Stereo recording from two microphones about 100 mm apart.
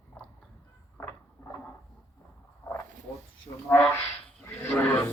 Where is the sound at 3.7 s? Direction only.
15° left (ahead or behind).